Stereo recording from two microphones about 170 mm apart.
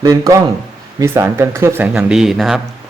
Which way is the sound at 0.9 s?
15° right (ahead or behind).